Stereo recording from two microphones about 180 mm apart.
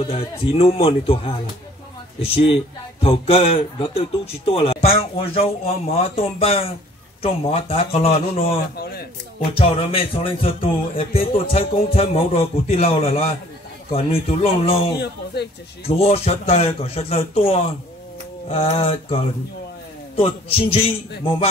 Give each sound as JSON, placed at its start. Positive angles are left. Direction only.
{"t": 0.0, "sound": "speech", "side_deg": 35}
{"t": 9.4, "sound": "speech", "side_deg": 30}
{"t": 15.3, "sound": "speech", "side_deg": 70}
{"t": 15.8, "sound": "speech", "side_deg": 35}
{"t": 20.2, "sound": "speech", "side_deg": 30}